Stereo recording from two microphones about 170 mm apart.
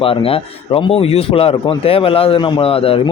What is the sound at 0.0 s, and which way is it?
A man's voice, 30° left (ahead or behind).